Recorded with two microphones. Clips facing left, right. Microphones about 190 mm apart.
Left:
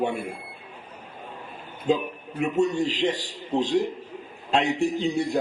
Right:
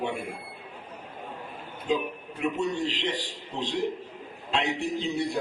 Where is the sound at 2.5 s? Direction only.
45° left (ahead or behind).